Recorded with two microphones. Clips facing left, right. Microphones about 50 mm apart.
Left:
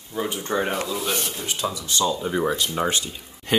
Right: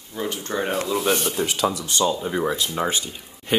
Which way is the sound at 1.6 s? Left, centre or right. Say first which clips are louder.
Right 3 dB; right.